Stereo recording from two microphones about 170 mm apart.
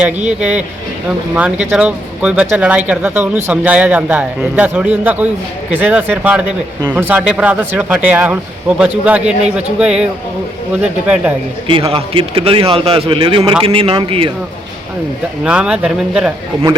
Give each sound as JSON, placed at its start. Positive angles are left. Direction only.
{"t": 0.3, "sound": "a man's voice", "side_deg": -5}
{"t": 11.9, "sound": "a man's voice", "side_deg": -30}
{"t": 15.4, "sound": "a man's voice", "side_deg": -5}